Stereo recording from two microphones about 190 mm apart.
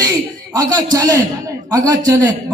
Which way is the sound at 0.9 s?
20° right (ahead or behind).